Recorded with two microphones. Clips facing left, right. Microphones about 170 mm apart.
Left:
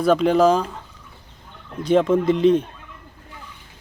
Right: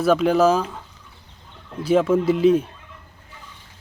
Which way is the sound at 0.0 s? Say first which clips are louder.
Left 1 dB; 5° right (ahead or behind).